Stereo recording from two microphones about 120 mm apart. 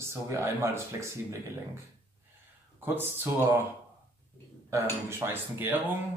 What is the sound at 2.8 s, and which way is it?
Speech, 20° right (ahead or behind).